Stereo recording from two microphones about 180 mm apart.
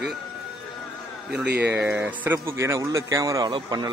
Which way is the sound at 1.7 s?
10° right (ahead or behind).